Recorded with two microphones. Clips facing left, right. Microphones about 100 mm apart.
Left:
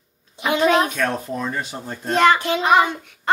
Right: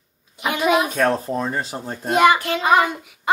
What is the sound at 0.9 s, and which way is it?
Speech, 35° right (ahead or behind).